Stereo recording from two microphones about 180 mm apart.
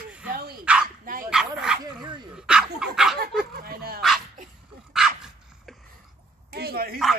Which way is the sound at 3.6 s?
60° right (ahead or behind).